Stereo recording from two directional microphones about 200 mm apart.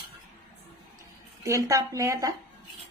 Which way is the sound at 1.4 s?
15° right (ahead or behind).